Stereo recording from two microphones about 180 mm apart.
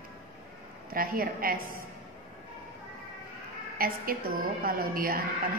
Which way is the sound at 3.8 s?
55° right (ahead or behind).